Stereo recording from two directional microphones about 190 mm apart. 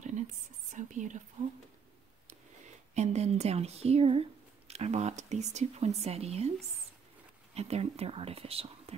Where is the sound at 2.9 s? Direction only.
35° right (ahead or behind).